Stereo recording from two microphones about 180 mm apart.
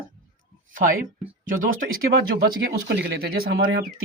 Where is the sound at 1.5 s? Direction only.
50° right (ahead or behind).